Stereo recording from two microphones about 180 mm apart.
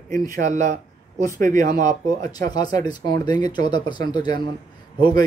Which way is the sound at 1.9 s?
20° left (ahead or behind).